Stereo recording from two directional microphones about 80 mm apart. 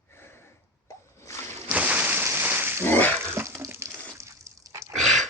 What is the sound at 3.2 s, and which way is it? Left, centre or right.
Water, right.